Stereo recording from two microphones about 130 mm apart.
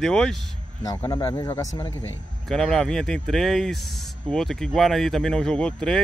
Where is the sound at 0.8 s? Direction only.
30° left (ahead or behind).